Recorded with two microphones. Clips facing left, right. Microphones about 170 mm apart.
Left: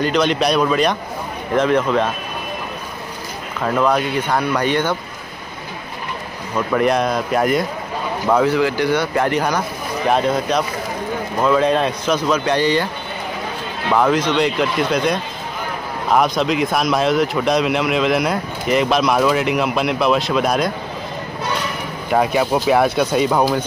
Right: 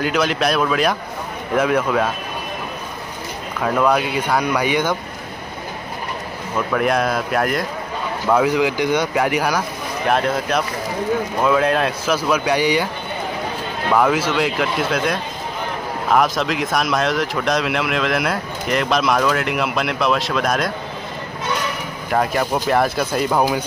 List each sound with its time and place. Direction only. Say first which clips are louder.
0.0 s speech: left 2 dB; 5° right (ahead or behind)
3.6 s speech: even; 5° right (ahead or behind)
6.7 s speech: left 2 dB; centre (ahead or behind)
8.5 s speech: left 1 dB; 15° right (ahead or behind)
13.9 s speech: left 1 dB; 5° right (ahead or behind)
22.1 s speech: left 3 dB; 5° left (ahead or behind)